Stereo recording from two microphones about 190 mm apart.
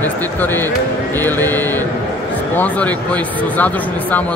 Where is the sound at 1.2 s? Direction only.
10° left (ahead or behind).